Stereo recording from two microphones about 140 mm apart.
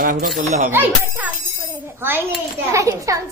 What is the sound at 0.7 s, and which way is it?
A child's voice, 15° right (ahead or behind).